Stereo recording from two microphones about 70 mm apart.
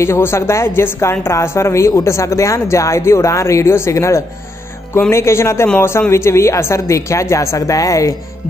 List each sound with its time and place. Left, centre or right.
0.0 s a woman's voice: left